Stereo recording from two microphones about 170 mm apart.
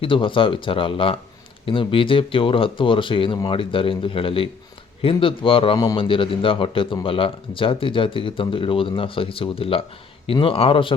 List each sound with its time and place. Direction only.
0.0 s a man's voice: 30° left (ahead or behind)
5.7 s a man's voice: 20° left (ahead or behind)